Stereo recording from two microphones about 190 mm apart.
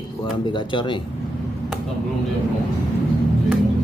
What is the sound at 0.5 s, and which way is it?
Speech, 25° left (ahead or behind).